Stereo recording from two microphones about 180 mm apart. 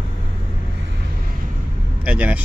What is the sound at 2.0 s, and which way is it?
Vehicle, 5° right (ahead or behind).